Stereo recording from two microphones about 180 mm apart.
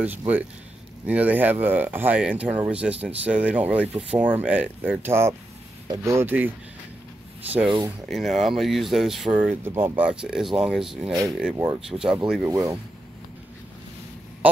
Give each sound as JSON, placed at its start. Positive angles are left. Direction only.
{"t": 0.0, "sound": "speech", "side_deg": -10}
{"t": 11.5, "sound": "speech", "side_deg": -20}
{"t": 11.9, "sound": "speech", "side_deg": -5}
{"t": 12.4, "sound": "speech", "side_deg": -15}